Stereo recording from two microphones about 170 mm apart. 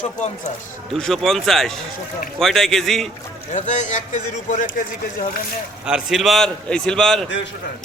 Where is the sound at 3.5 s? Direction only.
45° left (ahead or behind).